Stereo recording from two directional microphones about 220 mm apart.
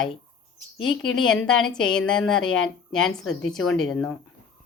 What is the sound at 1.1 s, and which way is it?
Speech, 5° left (ahead or behind).